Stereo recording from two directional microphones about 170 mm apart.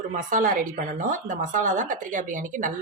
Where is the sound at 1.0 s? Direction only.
50° right (ahead or behind).